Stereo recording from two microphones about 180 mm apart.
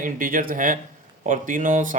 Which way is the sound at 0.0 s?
50° right (ahead or behind).